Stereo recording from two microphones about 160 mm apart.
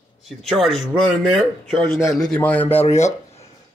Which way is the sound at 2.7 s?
40° left (ahead or behind).